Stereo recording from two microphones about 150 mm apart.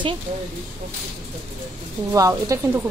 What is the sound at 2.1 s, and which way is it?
Speech, 20° right (ahead or behind).